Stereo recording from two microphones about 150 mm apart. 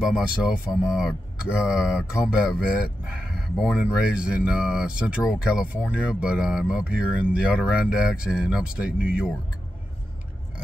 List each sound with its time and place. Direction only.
0.7 s speech: 5° right (ahead or behind)